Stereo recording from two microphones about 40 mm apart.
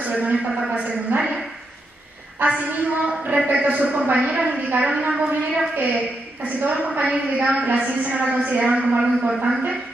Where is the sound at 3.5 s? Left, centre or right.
Right.